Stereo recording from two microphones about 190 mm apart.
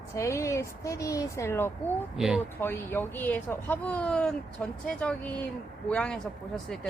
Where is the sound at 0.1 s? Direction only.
15° left (ahead or behind).